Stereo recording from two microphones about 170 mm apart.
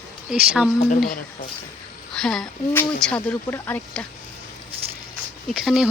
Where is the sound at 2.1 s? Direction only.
5° left (ahead or behind).